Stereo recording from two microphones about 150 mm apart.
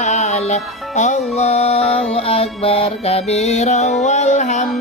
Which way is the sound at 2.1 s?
40° left (ahead or behind).